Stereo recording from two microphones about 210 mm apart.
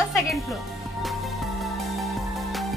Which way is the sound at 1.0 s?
Centre (ahead or behind).